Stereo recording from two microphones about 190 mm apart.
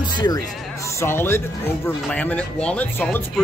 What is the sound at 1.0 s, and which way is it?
Speech, 10° left (ahead or behind).